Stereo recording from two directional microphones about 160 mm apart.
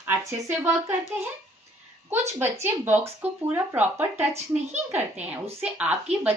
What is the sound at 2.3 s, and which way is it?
A woman's voice, 15° right (ahead or behind).